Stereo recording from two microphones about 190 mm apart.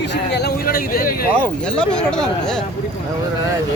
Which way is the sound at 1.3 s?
5° left (ahead or behind).